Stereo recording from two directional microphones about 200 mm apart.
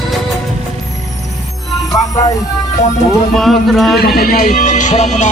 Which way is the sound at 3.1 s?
Centre (ahead or behind).